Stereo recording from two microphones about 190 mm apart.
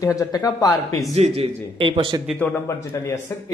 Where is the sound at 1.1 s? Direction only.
35° right (ahead or behind).